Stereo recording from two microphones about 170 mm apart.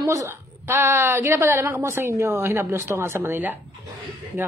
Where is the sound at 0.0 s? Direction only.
20° right (ahead or behind).